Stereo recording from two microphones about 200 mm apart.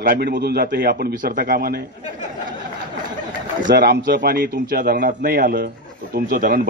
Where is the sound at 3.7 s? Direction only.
50° right (ahead or behind).